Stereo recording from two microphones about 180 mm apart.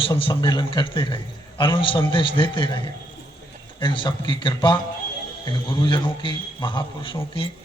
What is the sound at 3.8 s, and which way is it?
A man's voice, 25° left (ahead or behind).